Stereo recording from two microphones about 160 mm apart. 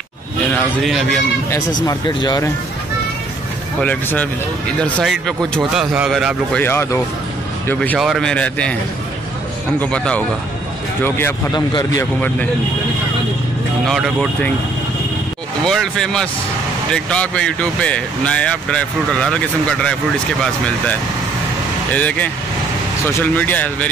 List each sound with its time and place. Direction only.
0.8 s speech: centre (ahead or behind)
1.9 s speech: 25° left (ahead or behind)
3.8 s speech: 10° left (ahead or behind)
6.6 s speech: 15° left (ahead or behind)
9.8 s speech: 5° left (ahead or behind)
11.5 s speech: 25° left (ahead or behind)
13.8 s speech: centre (ahead or behind)
15.6 s speech: centre (ahead or behind)
21.9 s speech: 10° left (ahead or behind)